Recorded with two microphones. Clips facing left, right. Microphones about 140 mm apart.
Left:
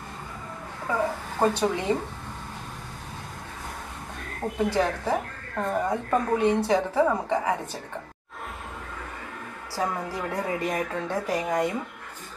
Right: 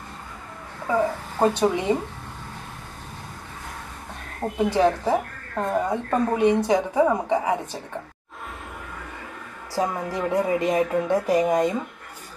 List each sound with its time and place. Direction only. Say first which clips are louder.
1.4 s speech: right 3 dB; 20° right (ahead or behind)
4.4 s speech: right 4 dB; 15° right (ahead or behind)
9.8 s speech: right 4 dB; 15° right (ahead or behind)